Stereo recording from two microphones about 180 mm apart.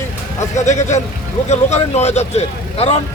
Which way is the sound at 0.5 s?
40° left (ahead or behind).